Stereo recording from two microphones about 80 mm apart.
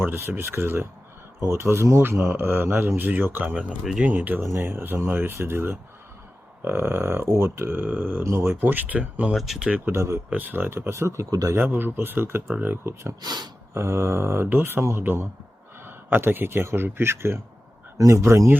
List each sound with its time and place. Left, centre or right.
0.0 s speech: right
3.8 s speech: centre
4.1 s speech: right
9.3 s speech: centre
9.6 s speech: centre
9.9 s speech: right
10.2 s speech: right
11.3 s a man's voice: right
11.5 s speech: right
13.2 s speech: right
13.7 s speech: right